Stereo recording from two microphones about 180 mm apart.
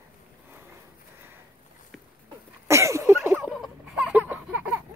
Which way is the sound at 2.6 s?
15° right (ahead or behind).